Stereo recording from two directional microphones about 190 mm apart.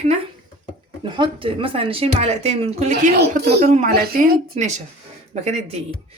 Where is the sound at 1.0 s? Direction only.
25° right (ahead or behind).